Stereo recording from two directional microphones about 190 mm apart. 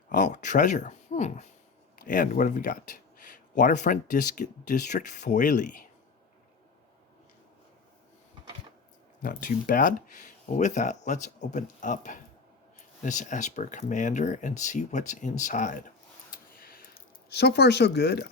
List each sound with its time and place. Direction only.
0.1 s speech: 40° left (ahead or behind)
9.2 s speech: 45° left (ahead or behind)
16.3 s a sound: 50° left (ahead or behind)